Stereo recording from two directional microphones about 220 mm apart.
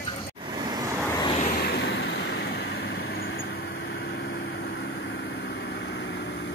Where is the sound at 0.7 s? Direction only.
15° right (ahead or behind).